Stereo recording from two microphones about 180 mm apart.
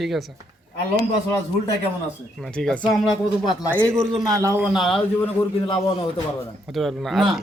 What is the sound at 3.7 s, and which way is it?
A man's voice, 10° right (ahead or behind).